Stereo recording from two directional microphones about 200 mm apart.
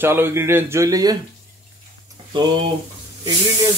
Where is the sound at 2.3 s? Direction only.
25° right (ahead or behind).